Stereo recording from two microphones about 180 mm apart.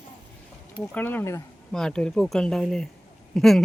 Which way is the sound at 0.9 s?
10° left (ahead or behind).